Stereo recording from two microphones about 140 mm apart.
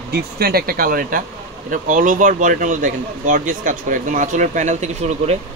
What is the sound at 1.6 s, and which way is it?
Speech, 70° right (ahead or behind).